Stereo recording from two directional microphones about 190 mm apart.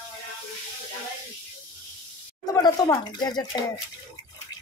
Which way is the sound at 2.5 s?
20° left (ahead or behind).